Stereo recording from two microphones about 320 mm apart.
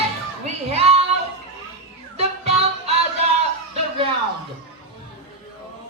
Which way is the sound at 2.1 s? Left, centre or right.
Centre.